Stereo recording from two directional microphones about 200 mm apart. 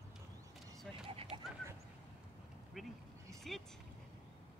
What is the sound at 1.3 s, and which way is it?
Horse, 25° right (ahead or behind).